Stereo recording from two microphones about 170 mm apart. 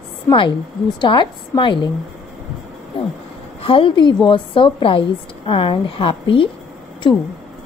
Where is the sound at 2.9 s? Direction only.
35° left (ahead or behind).